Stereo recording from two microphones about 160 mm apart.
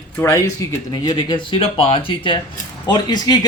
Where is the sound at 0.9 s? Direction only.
25° left (ahead or behind).